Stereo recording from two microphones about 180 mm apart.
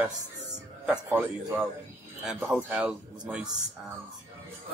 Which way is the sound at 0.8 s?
10° right (ahead or behind).